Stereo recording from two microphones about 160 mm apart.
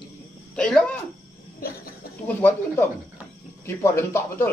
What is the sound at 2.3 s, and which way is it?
Speech, 10° left (ahead or behind).